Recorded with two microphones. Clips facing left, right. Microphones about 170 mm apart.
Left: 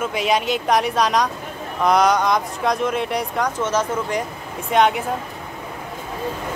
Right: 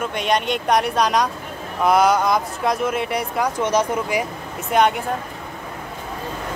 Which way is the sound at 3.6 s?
15° right (ahead or behind).